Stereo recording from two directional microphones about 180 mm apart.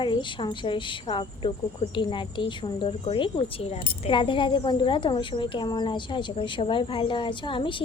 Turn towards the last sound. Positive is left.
turn(degrees=25)  # may be behind; listen again after turning